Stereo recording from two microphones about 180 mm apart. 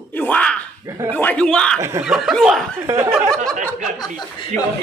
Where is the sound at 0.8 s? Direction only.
15° right (ahead or behind).